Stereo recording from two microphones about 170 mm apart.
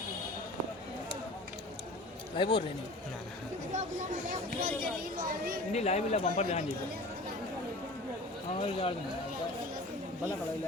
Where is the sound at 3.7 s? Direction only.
50° right (ahead or behind).